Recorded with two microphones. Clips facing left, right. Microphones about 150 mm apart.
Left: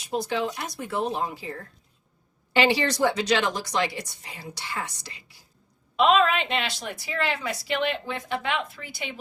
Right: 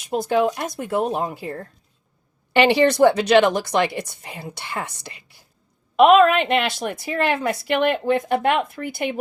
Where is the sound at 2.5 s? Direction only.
60° right (ahead or behind).